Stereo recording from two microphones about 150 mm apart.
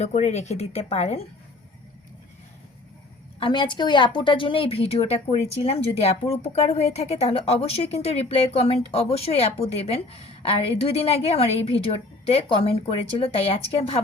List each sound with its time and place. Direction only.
0.0 s speech: 50° left (ahead or behind)
3.4 s a woman's voice: 30° left (ahead or behind)